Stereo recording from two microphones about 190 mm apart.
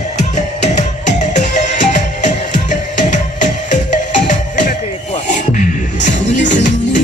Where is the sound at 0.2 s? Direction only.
35° left (ahead or behind).